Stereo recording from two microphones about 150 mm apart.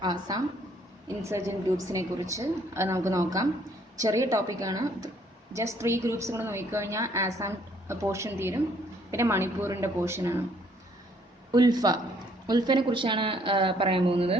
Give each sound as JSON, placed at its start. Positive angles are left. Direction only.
{"t": 0.0, "sound": "a woman's voice", "side_deg": -25}
{"t": 11.5, "sound": "a woman's voice", "side_deg": -25}